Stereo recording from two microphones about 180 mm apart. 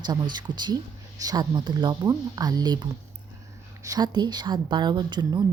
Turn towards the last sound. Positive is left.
turn(degrees=-25)  # may be behind; listen again after turning